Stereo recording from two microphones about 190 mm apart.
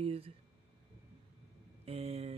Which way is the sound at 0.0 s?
30° right (ahead or behind).